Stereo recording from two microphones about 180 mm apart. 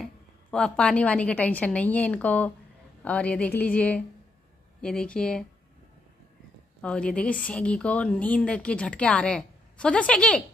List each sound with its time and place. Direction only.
0.0 s a woman's voice: 5° left (ahead or behind)
6.8 s a woman's voice: 5° left (ahead or behind)